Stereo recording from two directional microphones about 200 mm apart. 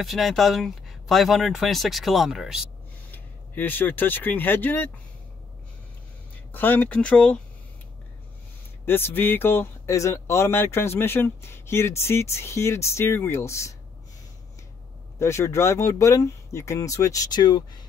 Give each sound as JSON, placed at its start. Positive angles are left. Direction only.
{"t": 0.0, "sound": "speech", "side_deg": 0}
{"t": 3.1, "sound": "speech", "side_deg": 10}
{"t": 6.5, "sound": "speech", "side_deg": 10}
{"t": 8.8, "sound": "speech", "side_deg": 10}
{"t": 15.1, "sound": "speech", "side_deg": 15}